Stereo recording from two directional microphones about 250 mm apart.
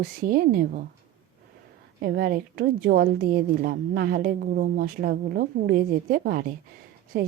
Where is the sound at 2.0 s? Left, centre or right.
Right.